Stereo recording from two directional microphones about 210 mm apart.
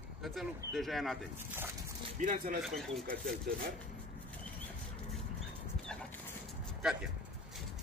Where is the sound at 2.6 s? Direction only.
Centre (ahead or behind).